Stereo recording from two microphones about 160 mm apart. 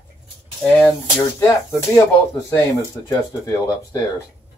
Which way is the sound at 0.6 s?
10° left (ahead or behind).